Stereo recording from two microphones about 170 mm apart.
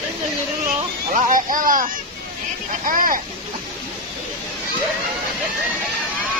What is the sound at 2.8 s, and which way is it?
Speech, 55° right (ahead or behind).